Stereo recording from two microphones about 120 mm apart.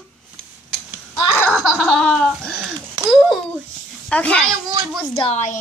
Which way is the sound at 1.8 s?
5° left (ahead or behind).